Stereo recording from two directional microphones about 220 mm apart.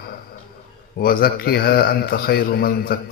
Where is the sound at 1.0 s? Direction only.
40° left (ahead or behind).